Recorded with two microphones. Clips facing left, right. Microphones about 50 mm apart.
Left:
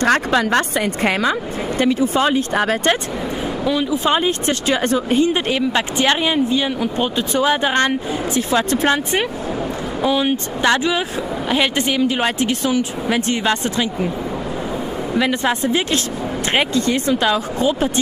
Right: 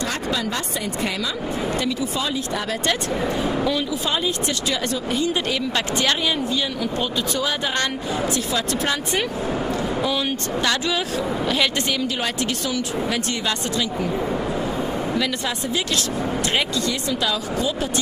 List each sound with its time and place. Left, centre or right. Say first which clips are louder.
0.0 s speech: left 9 dB; left
1.8 s speech: left 8 dB; left
15.1 s speech: left 6 dB; left